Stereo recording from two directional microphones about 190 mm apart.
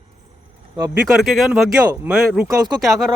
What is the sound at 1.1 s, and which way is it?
Speech, centre (ahead or behind).